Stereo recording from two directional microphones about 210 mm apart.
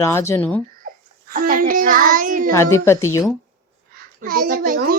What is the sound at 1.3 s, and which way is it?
A child's voice, 40° right (ahead or behind).